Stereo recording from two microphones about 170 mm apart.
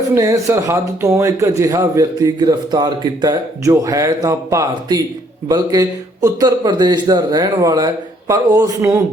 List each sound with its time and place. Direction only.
0.1 s a man's voice: 20° right (ahead or behind)